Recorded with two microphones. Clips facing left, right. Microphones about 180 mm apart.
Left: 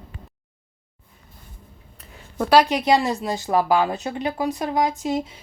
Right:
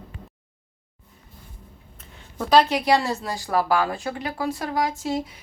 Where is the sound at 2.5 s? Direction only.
15° left (ahead or behind).